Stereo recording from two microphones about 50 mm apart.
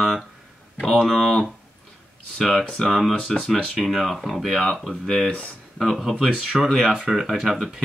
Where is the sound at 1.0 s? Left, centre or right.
Centre.